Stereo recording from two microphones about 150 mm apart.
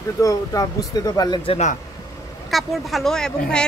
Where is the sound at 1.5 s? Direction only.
50° left (ahead or behind).